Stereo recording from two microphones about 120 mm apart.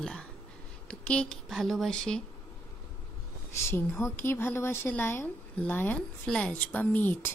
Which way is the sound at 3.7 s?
20° left (ahead or behind).